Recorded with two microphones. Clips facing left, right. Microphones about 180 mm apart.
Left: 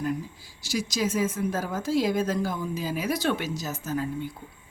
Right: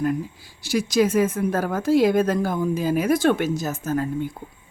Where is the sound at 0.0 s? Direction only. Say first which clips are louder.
Right 6 dB; 55° right (ahead or behind).